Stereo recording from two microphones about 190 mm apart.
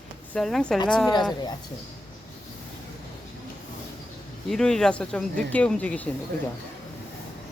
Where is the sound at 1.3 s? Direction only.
20° left (ahead or behind).